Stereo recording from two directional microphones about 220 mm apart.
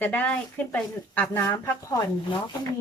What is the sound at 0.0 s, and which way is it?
Speech, 10° left (ahead or behind).